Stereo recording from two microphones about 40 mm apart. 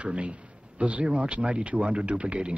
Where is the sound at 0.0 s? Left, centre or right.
Right.